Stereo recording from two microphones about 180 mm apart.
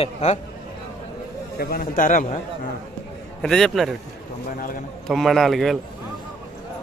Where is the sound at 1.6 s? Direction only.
55° left (ahead or behind).